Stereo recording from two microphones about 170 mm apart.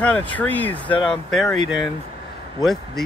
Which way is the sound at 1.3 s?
Centre (ahead or behind).